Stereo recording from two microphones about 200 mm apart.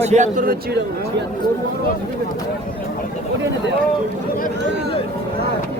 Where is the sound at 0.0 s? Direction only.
35° right (ahead or behind).